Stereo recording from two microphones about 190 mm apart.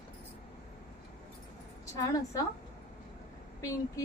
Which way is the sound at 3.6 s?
15° left (ahead or behind).